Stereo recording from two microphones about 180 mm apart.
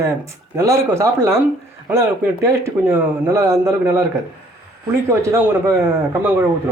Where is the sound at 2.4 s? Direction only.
15° right (ahead or behind).